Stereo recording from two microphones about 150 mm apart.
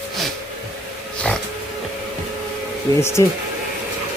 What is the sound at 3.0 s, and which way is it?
Speech, 15° left (ahead or behind).